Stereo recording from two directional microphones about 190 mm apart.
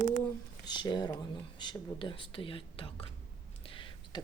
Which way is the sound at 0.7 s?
25° left (ahead or behind).